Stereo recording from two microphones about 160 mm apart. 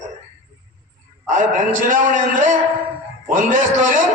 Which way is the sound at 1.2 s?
55° right (ahead or behind).